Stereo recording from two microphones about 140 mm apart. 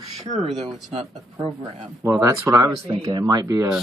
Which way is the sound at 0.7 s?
Centre (ahead or behind).